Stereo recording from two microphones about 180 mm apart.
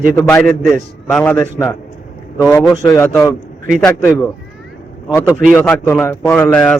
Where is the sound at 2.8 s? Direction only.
20° left (ahead or behind).